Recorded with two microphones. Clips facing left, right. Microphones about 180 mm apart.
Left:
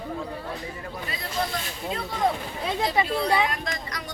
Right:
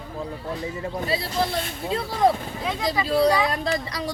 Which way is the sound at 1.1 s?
30° right (ahead or behind).